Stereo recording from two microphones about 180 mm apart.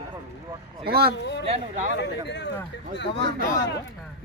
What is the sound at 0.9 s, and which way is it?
Speech, 60° right (ahead or behind).